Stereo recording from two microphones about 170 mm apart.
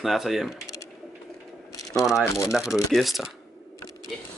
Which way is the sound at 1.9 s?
Centre (ahead or behind).